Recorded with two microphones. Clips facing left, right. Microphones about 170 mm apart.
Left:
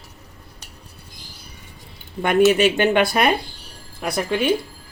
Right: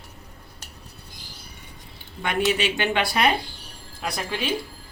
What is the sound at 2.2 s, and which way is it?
Speech, 45° left (ahead or behind).